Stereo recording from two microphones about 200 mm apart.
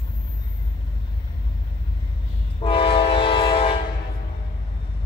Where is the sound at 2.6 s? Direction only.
25° left (ahead or behind).